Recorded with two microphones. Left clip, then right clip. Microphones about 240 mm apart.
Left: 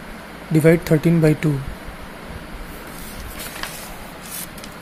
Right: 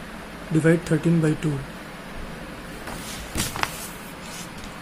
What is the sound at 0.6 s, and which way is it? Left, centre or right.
Speech, centre.